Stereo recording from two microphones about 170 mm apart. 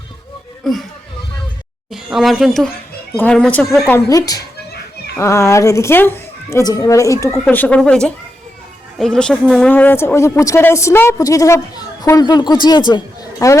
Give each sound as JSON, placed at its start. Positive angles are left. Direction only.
{"t": 0.6, "sound": "speech", "side_deg": 0}
{"t": 1.9, "sound": "speech", "side_deg": 0}
{"t": 3.9, "sound": "speech", "side_deg": 20}
{"t": 7.3, "sound": "speech", "side_deg": 5}